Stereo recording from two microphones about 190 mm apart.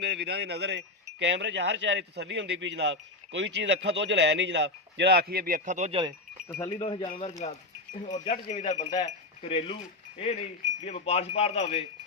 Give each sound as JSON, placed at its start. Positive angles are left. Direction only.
{"t": 0.0, "sound": "a man's voice", "side_deg": -60}
{"t": 6.7, "sound": "speech", "side_deg": 25}
{"t": 7.1, "sound": "speech", "side_deg": 40}